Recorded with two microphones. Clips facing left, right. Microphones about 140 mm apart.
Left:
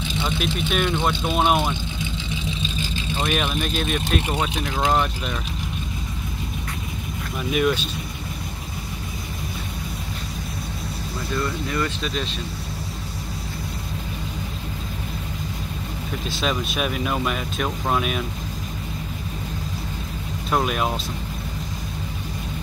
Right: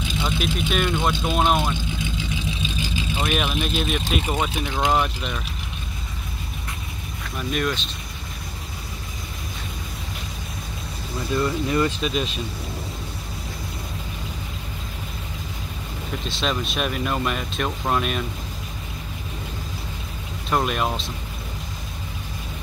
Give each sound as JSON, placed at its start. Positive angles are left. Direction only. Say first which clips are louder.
{"t": 0.2, "sound": "speech", "louder": "even", "side_deg": 0}
{"t": 3.2, "sound": "speech", "louder": "left 1 dB", "side_deg": 0}
{"t": 7.3, "sound": "speech", "louder": "left 4 dB", "side_deg": 5}
{"t": 11.3, "sound": "speech", "louder": "right 4 dB", "side_deg": -20}
{"t": 16.3, "sound": "speech", "louder": "left 1 dB", "side_deg": 0}
{"t": 20.4, "sound": "speech", "louder": "even", "side_deg": 0}